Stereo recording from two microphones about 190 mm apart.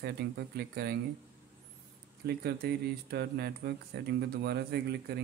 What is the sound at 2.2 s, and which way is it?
Speech, 60° right (ahead or behind).